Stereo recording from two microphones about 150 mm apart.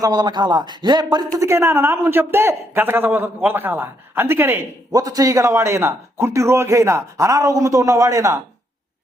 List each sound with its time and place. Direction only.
0.0 s speech: 25° right (ahead or behind)
1.4 s a man's voice: 15° right (ahead or behind)